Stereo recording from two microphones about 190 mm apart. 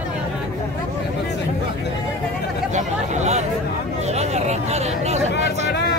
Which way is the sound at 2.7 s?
40° right (ahead or behind).